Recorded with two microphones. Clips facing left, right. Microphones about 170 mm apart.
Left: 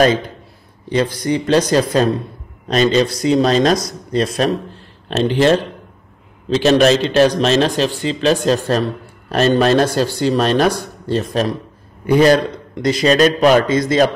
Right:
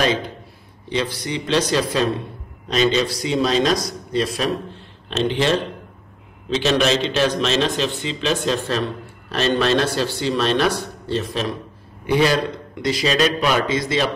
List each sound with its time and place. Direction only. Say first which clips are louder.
0.8 s a man's voice: left 7 dB; 45° left (ahead or behind)